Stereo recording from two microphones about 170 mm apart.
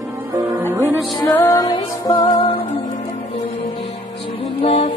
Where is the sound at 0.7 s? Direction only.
15° right (ahead or behind).